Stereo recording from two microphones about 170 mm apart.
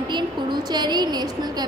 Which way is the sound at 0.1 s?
25° right (ahead or behind).